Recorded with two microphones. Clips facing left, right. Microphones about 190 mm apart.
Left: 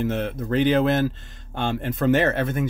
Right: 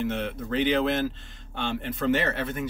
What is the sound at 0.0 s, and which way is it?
Speech, 45° left (ahead or behind).